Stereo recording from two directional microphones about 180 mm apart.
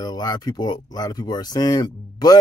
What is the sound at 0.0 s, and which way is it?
Speech, 20° left (ahead or behind).